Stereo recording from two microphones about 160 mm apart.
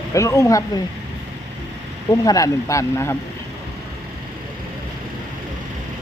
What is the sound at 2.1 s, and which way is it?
Speech, 20° left (ahead or behind).